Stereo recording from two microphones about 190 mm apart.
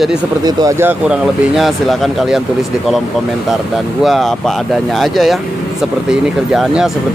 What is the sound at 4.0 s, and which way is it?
Speech, centre (ahead or behind).